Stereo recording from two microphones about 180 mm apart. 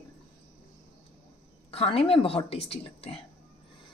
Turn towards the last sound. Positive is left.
turn(degrees=35)  # may be behind; listen again after turning